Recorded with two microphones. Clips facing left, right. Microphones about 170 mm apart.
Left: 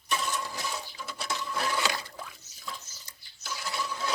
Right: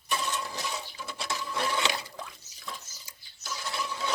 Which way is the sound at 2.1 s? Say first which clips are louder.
Right 1 dB; 5° left (ahead or behind).